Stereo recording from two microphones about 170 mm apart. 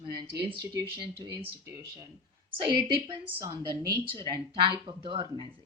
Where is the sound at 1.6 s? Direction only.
20° right (ahead or behind).